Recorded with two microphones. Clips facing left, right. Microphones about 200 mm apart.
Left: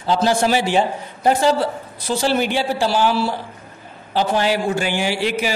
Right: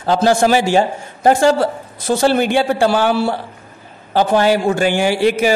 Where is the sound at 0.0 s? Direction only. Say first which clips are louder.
Right 4 dB; 50° right (ahead or behind).